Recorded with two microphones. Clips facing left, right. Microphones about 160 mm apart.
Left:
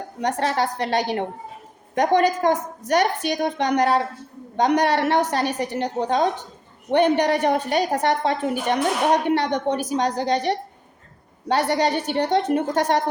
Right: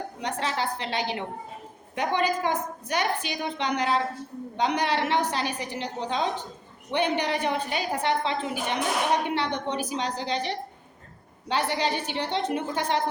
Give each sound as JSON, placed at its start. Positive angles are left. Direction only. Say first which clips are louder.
{"t": 0.2, "sound": "a woman's voice", "louder": "left 8 dB", "side_deg": 45}